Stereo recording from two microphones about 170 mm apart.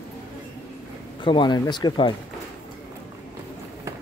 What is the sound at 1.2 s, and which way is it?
Speech, 25° left (ahead or behind).